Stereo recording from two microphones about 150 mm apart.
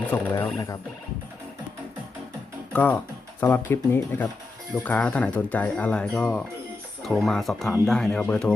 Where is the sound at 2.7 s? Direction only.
10° left (ahead or behind).